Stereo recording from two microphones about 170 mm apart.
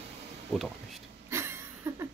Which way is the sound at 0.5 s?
Centre (ahead or behind).